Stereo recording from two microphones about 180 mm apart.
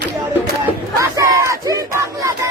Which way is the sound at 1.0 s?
15° right (ahead or behind).